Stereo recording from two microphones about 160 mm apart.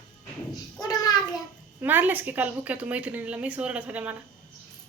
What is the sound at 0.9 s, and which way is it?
Speech, 25° left (ahead or behind).